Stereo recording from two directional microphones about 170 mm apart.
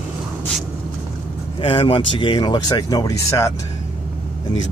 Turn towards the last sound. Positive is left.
turn(degrees=20)  # may be behind; listen again after turning